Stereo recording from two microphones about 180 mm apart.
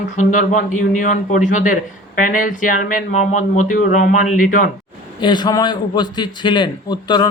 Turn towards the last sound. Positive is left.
turn(degrees=25)  # may be behind; listen again after turning